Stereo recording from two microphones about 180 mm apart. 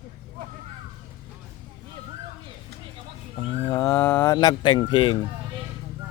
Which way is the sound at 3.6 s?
15° left (ahead or behind).